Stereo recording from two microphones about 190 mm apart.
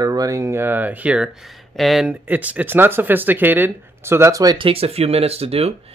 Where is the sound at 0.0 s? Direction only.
20° right (ahead or behind).